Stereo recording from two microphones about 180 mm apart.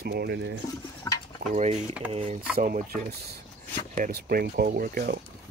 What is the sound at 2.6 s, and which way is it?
Speech, 55° right (ahead or behind).